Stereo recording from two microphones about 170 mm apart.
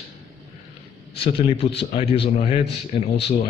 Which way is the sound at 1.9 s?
35° left (ahead or behind).